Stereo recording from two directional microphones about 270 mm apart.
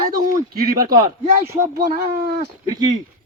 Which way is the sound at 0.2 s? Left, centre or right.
Right.